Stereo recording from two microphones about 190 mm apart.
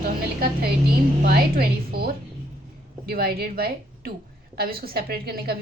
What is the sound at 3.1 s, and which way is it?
A woman's voice, 55° right (ahead or behind).